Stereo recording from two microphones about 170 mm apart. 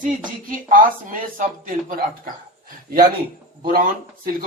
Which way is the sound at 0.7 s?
50° right (ahead or behind).